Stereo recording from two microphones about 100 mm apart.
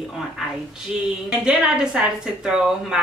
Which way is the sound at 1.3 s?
10° right (ahead or behind).